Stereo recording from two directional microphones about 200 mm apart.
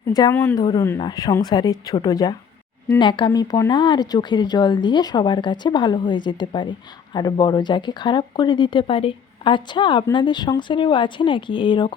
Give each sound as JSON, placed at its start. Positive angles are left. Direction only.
{"t": 0.1, "sound": "a woman's voice", "side_deg": 15}